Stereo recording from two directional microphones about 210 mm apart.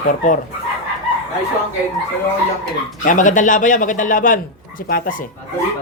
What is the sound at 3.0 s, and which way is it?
A man's voice, 40° left (ahead or behind).